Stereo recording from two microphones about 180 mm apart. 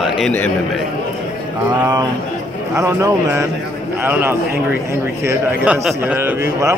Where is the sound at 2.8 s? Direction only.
15° right (ahead or behind).